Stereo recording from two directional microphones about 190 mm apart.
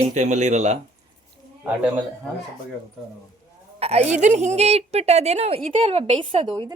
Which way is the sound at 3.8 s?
35° right (ahead or behind).